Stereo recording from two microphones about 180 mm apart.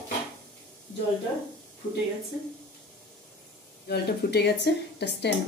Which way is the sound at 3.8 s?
65° left (ahead or behind).